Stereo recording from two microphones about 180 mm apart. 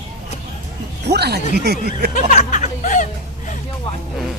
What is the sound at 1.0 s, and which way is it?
Speech, 65° right (ahead or behind).